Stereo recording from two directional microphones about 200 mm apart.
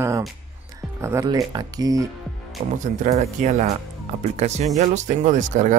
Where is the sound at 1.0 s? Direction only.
15° right (ahead or behind).